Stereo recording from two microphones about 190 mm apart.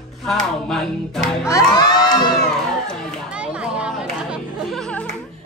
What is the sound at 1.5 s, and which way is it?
Crowd, 20° left (ahead or behind).